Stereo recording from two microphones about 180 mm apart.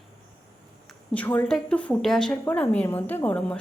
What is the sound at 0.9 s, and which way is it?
A woman's voice, 10° left (ahead or behind).